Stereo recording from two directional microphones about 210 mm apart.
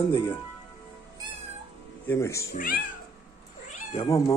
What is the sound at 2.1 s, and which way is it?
Speech, 15° left (ahead or behind).